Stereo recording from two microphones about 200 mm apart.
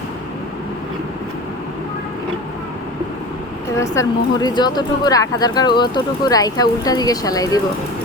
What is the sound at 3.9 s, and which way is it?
Speech, 20° left (ahead or behind).